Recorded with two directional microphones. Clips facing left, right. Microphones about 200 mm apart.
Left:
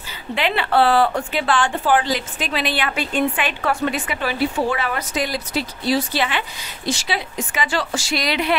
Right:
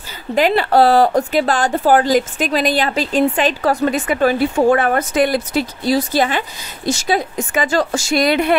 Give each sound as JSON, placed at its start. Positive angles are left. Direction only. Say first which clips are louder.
{"t": 0.3, "sound": "speech", "louder": "right 6 dB", "side_deg": -40}